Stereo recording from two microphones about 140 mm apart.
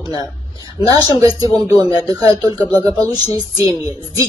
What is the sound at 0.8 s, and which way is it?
Speech, 25° right (ahead or behind).